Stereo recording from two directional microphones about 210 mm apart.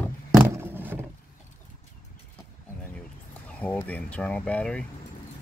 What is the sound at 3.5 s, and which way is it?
Speech, 5° left (ahead or behind).